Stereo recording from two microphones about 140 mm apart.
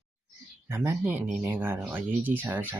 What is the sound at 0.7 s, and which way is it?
Speech, 15° right (ahead or behind).